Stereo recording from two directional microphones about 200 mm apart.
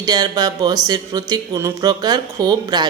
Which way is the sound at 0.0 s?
20° right (ahead or behind).